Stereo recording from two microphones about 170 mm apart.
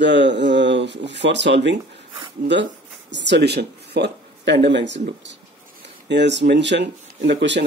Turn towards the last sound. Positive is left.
turn(degrees=-90)